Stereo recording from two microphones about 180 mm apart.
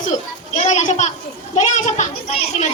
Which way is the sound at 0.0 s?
40° left (ahead or behind).